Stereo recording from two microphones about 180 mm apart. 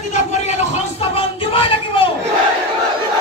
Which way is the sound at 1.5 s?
30° left (ahead or behind).